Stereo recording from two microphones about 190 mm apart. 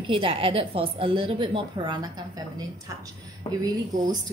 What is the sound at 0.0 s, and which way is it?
A woman's voice, 30° right (ahead or behind).